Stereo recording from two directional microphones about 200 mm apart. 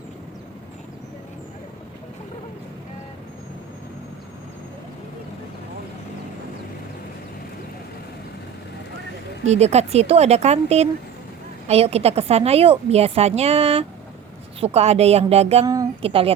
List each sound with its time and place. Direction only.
9.5 s speech: 35° right (ahead or behind)
15.6 s speech: 15° right (ahead or behind)
16.0 s a woman's voice: 30° right (ahead or behind)